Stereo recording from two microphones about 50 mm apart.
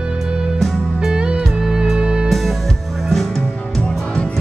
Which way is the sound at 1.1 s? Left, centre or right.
Centre.